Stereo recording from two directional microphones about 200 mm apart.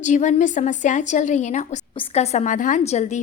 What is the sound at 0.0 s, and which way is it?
A woman's voice, 40° left (ahead or behind).